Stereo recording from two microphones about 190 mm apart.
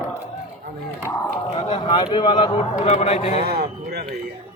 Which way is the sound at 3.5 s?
55° right (ahead or behind).